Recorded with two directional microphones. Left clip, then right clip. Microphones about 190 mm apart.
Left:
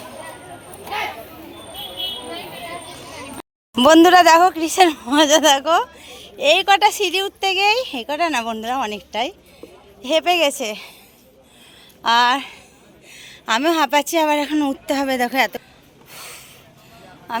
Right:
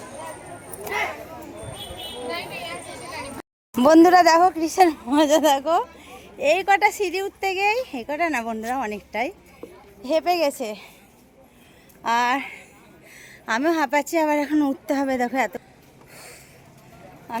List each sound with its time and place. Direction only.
3.8 s speech: 5° right (ahead or behind)
12.0 s a woman's voice: centre (ahead or behind)
16.1 s a sound: 5° right (ahead or behind)